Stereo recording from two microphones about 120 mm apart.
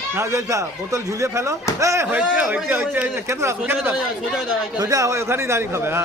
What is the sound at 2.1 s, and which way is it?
A man's voice, 10° right (ahead or behind).